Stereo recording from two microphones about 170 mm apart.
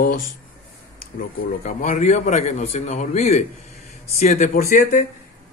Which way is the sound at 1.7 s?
45° left (ahead or behind).